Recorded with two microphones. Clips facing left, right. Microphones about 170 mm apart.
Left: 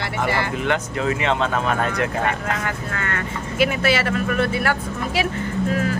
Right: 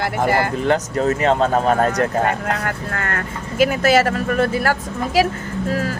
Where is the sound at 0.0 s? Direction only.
45° right (ahead or behind).